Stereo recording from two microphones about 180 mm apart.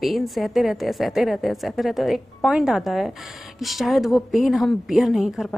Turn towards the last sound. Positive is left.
turn(degrees=0)  # may be behind; listen again after turning